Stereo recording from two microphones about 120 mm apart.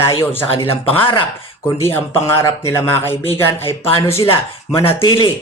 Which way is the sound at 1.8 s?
20° left (ahead or behind).